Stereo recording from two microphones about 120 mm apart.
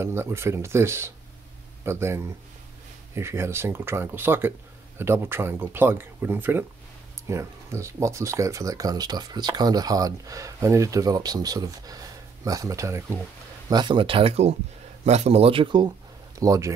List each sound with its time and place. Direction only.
0.0 s speech: 20° right (ahead or behind)
13.7 s speech: 35° right (ahead or behind)
16.3 s speech: 30° right (ahead or behind)